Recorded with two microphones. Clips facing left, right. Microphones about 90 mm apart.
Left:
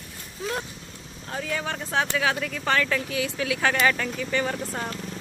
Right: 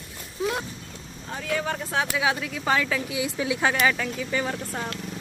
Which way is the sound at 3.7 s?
5° right (ahead or behind).